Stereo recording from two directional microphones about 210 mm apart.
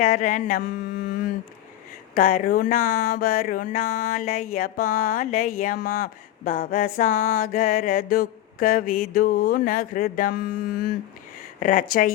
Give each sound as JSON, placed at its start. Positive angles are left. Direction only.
{"t": 0.0, "sound": "music", "side_deg": 40}
{"t": 2.1, "sound": "speech", "side_deg": 45}
{"t": 11.6, "sound": "music", "side_deg": 40}